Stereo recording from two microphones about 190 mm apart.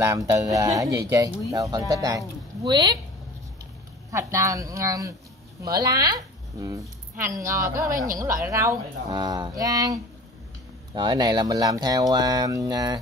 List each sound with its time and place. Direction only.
0.0 s speech: 15° right (ahead or behind)
4.1 s speech: 15° right (ahead or behind)
11.0 s speech: 20° right (ahead or behind)